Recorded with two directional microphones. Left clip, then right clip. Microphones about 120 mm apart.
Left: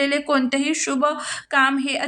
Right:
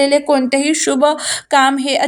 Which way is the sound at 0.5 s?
30° right (ahead or behind).